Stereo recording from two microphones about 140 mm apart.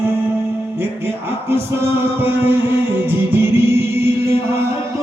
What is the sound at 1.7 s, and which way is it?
Music, 15° right (ahead or behind).